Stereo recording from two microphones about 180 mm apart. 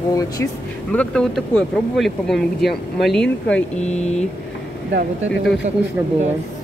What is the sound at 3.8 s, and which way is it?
Speech, 40° left (ahead or behind).